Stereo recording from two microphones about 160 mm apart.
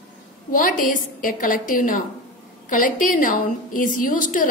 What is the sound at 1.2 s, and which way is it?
A woman's voice, 60° left (ahead or behind).